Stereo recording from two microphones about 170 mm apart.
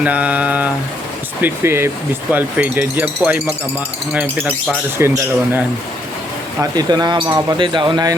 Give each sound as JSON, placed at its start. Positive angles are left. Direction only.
{"t": 0.0, "sound": "speech", "side_deg": -10}